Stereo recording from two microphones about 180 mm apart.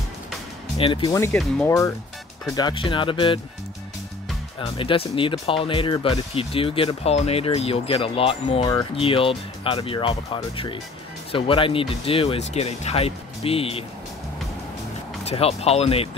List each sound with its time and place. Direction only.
0.7 s speech: 30° left (ahead or behind)
1.1 s speech: 15° left (ahead or behind)
4.6 s speech: 30° left (ahead or behind)
15.2 s speech: 35° left (ahead or behind)